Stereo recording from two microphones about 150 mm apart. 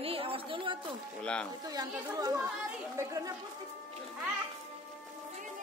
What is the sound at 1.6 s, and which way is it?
Speech, 25° right (ahead or behind).